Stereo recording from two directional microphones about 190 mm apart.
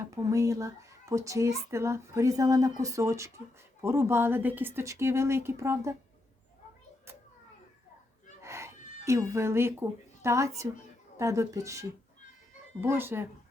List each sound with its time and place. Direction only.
0.0 s a child's voice: 15° right (ahead or behind)
8.4 s a sound: 15° right (ahead or behind)
9.0 s a child's voice: 15° right (ahead or behind)